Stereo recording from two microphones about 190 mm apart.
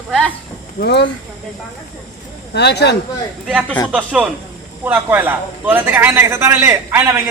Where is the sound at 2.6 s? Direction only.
60° left (ahead or behind).